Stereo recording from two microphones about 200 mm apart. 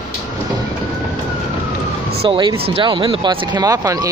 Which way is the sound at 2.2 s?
25° right (ahead or behind).